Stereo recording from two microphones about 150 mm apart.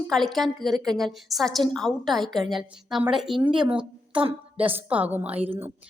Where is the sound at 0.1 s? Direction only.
Centre (ahead or behind).